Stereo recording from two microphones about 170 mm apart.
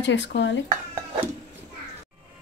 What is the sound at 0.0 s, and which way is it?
Speech, 90° left.